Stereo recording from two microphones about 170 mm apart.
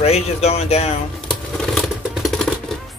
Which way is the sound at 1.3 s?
Centre (ahead or behind).